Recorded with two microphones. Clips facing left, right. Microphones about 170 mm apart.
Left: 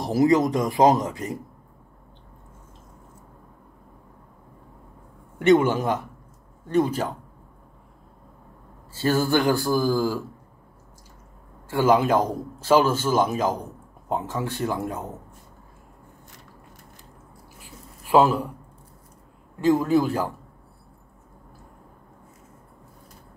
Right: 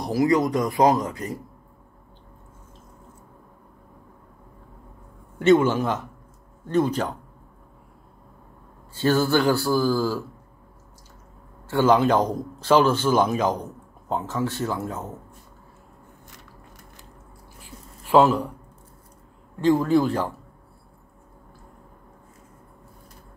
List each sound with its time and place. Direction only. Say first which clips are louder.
0.1 s speech: left 1 dB; 25° left (ahead or behind)
5.4 s a man's voice: even; 15° left (ahead or behind)
8.9 s a man's voice: right 1 dB; 10° left (ahead or behind)
11.7 s a man's voice: right 1 dB; 10° left (ahead or behind)
18.0 s a man's voice: right 1 dB; 10° left (ahead or behind)
19.8 s a man's voice: right 1 dB; 10° left (ahead or behind)